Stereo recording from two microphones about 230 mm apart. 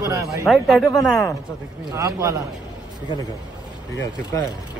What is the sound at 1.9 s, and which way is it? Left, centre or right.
Speech, centre.